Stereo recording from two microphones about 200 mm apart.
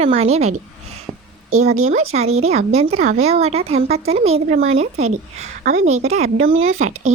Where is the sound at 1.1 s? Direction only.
20° right (ahead or behind).